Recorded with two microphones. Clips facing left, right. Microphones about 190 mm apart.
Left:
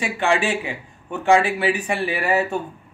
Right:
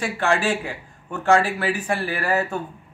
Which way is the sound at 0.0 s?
15° left (ahead or behind).